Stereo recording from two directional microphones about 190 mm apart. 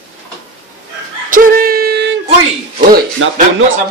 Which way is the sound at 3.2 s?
90° right.